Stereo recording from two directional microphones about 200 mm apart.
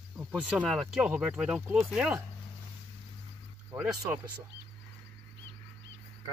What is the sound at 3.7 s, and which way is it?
Speech, 15° right (ahead or behind).